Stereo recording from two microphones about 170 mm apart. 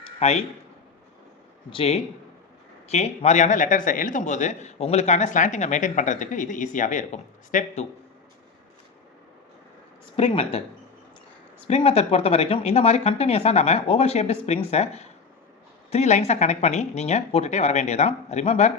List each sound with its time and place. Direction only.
0.2 s speech: 40° left (ahead or behind)
1.7 s a man's voice: 35° left (ahead or behind)
10.2 s speech: 35° left (ahead or behind)
11.7 s speech: 35° left (ahead or behind)